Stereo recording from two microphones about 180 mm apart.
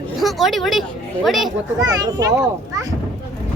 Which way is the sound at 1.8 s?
20° right (ahead or behind).